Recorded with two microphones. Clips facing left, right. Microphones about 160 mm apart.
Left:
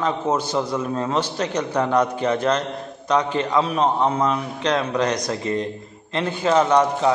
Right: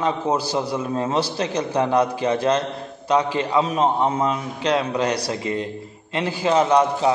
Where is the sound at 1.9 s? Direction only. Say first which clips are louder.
Left 1 dB; 30° right (ahead or behind).